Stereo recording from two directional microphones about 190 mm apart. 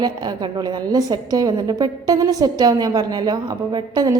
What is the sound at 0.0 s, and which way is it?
A woman's voice, 20° right (ahead or behind).